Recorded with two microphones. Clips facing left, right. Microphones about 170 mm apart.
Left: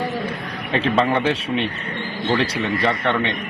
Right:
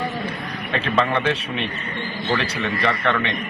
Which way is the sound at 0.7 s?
30° left (ahead or behind).